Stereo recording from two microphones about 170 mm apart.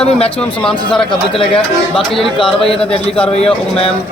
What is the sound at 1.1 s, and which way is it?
Speech, 35° left (ahead or behind).